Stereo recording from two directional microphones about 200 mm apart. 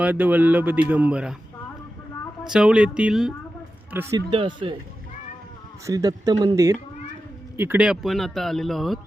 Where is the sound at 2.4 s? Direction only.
5° right (ahead or behind).